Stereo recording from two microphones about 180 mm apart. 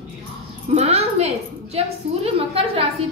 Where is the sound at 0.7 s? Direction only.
35° right (ahead or behind).